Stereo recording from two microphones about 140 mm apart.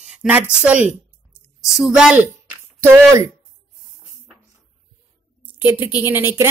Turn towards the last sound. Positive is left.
turn(degrees=-15)  # may be behind; listen again after turning